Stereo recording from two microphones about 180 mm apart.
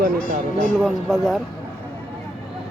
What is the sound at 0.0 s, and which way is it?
Speech, 50° right (ahead or behind).